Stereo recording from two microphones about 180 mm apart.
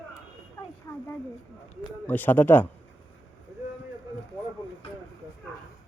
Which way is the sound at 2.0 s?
10° left (ahead or behind).